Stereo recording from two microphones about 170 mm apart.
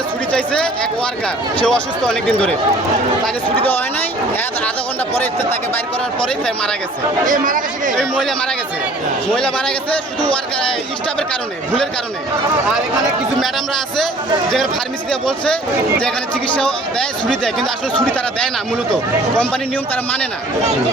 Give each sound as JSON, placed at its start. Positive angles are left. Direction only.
{"t": 0.3, "sound": "a man's voice", "side_deg": 5}
{"t": 6.2, "sound": "a man's voice", "side_deg": 5}
{"t": 7.3, "sound": "speech", "side_deg": -50}
{"t": 7.9, "sound": "a man's voice", "side_deg": 5}
{"t": 13.4, "sound": "a man's voice", "side_deg": 0}
{"t": 15.1, "sound": "a man's voice", "side_deg": 5}
{"t": 17.2, "sound": "a man's voice", "side_deg": 5}